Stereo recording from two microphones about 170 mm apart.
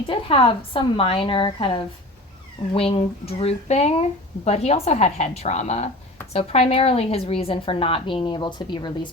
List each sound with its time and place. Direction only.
0.1 s a woman's voice: 30° left (ahead or behind)